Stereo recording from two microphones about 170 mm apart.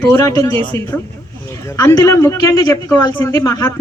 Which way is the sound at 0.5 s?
30° right (ahead or behind).